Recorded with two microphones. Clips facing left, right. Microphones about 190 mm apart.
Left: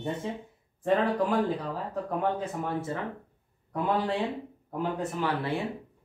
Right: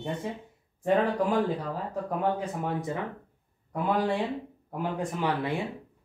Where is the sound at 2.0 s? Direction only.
15° right (ahead or behind).